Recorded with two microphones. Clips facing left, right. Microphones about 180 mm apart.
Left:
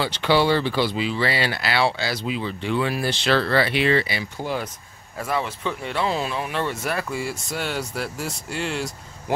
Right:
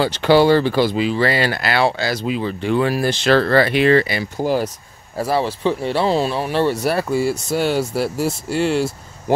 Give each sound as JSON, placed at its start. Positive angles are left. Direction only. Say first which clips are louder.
{"t": 0.0, "sound": "speech", "louder": "right 6 dB", "side_deg": -45}
{"t": 8.5, "sound": "speech", "louder": "right 9 dB", "side_deg": -5}